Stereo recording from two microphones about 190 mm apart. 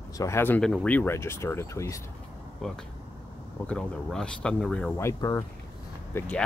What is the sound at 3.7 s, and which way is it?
Speech, 5° left (ahead or behind).